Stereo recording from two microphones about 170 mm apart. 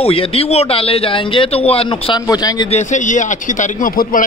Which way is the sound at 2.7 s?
45° left (ahead or behind).